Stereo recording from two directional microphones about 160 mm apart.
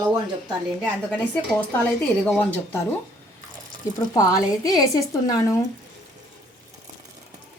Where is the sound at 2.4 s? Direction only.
10° left (ahead or behind).